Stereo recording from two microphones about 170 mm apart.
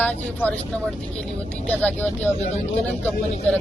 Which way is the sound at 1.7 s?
10° left (ahead or behind).